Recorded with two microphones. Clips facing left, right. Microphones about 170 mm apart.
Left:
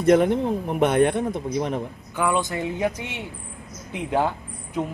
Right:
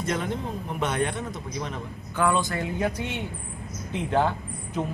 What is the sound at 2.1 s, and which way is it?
Speech, 15° left (ahead or behind).